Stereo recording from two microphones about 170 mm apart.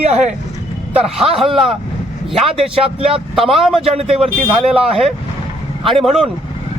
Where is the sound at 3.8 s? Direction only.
35° right (ahead or behind).